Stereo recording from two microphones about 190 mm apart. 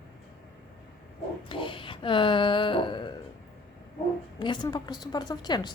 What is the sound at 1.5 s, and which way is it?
A woman's voice, 25° left (ahead or behind).